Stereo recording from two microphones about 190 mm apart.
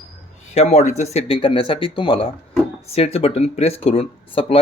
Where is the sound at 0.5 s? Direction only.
35° left (ahead or behind).